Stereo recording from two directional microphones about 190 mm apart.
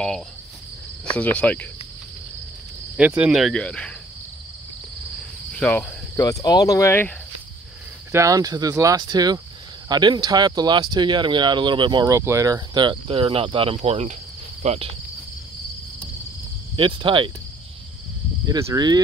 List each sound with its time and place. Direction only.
1.1 s speech: 5° left (ahead or behind)
3.0 s speech: 5° right (ahead or behind)
5.5 s speech: 5° left (ahead or behind)
6.1 s speech: 20° left (ahead or behind)
8.1 s speech: 15° right (ahead or behind); by 14.1 s 35° right (ahead or behind)
14.6 s insect: 35° right (ahead or behind)
16.7 s speech: 25° right (ahead or behind)
18.5 s speech: 20° right (ahead or behind)